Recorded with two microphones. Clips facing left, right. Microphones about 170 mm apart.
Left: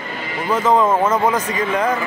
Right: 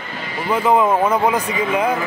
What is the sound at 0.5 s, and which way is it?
Speech, 15° right (ahead or behind).